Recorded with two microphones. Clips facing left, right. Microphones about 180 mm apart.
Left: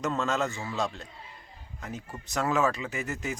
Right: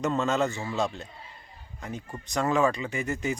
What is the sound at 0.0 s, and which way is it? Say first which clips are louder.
Speech: right 3 dB; centre (ahead or behind).